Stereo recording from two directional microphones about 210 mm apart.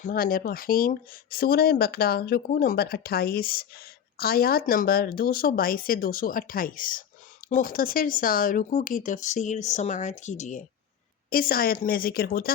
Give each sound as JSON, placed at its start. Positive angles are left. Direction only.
{"t": 0.0, "sound": "speech", "side_deg": 40}